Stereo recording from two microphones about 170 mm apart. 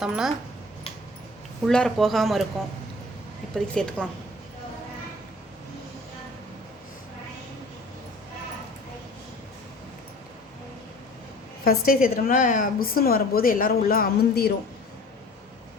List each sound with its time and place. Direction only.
0.0 s speech: 5° right (ahead or behind)
1.6 s speech: 5° left (ahead or behind)
11.6 s a woman's voice: 60° left (ahead or behind)